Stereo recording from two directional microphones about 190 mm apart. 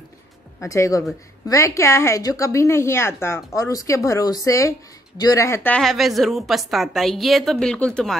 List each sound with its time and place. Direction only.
0.6 s a woman's voice: 15° left (ahead or behind)